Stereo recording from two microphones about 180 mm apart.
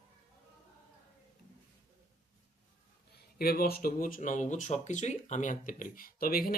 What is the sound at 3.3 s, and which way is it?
Speech, 55° left (ahead or behind).